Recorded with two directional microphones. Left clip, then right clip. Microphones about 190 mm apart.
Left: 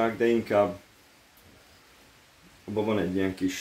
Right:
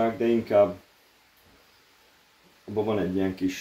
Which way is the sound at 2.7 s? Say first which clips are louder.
Right 1 dB; 10° left (ahead or behind).